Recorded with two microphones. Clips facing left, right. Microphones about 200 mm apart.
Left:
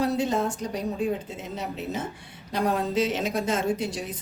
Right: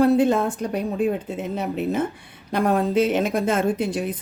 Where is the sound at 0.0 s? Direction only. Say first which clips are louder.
Right 7 dB; 55° right (ahead or behind).